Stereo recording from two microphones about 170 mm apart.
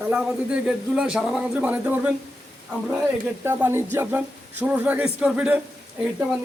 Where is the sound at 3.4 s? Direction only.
15° right (ahead or behind).